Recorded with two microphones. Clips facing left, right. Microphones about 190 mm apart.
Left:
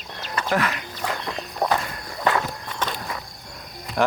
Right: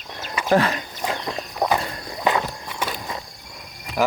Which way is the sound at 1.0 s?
15° right (ahead or behind).